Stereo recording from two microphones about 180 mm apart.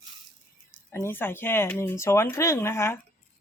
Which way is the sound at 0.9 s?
15° left (ahead or behind).